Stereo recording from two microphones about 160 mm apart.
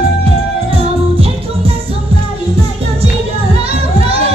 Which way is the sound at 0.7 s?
35° right (ahead or behind).